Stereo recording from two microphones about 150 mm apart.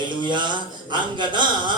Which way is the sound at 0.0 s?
30° right (ahead or behind).